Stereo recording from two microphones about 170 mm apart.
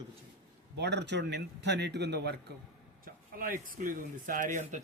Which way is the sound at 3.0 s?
55° right (ahead or behind).